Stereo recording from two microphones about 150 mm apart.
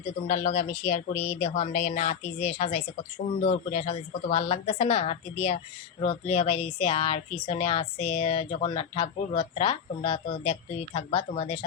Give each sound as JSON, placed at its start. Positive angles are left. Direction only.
{"t": 0.3, "sound": "speech", "side_deg": 50}